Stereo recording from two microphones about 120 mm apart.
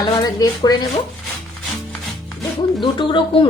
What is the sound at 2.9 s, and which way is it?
Speech, 45° left (ahead or behind).